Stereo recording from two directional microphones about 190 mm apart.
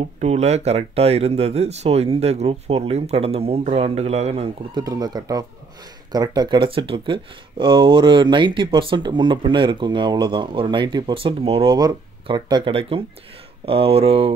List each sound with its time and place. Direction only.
0.2 s speech: 35° right (ahead or behind)
4.8 s speech: 20° right (ahead or behind)